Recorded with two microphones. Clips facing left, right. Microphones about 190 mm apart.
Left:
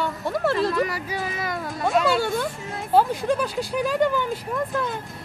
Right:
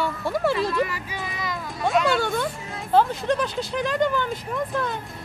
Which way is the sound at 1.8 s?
5° left (ahead or behind).